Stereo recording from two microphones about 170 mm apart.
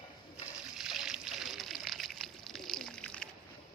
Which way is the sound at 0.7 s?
Centre (ahead or behind).